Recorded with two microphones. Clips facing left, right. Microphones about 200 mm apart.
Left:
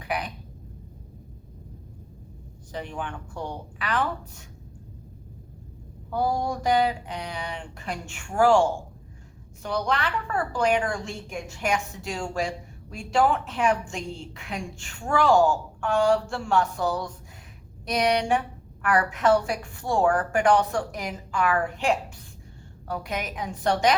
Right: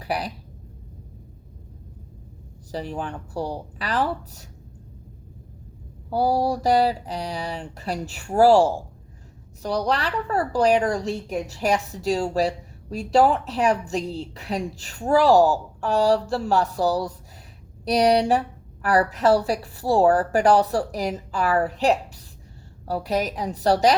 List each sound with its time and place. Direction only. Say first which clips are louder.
0.0 s speech: right 3 dB; 35° right (ahead or behind)
2.7 s a woman's voice: right 4 dB; 35° right (ahead or behind)
6.1 s a woman's voice: right 5 dB; 35° right (ahead or behind)